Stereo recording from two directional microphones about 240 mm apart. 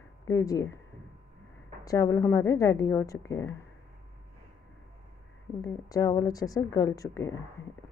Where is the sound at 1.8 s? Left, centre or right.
Centre.